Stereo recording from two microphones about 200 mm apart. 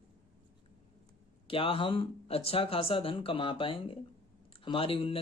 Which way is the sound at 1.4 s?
25° left (ahead or behind).